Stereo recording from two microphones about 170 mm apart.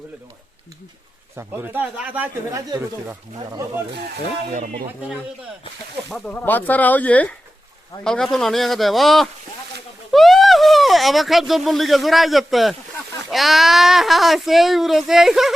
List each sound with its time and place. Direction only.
1.4 s speech: 10° right (ahead or behind)
2.6 s speech: 20° right (ahead or behind)
6.1 s speech: 5° left (ahead or behind)